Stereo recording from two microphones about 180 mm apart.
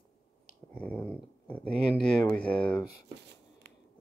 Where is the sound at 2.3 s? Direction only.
5° left (ahead or behind).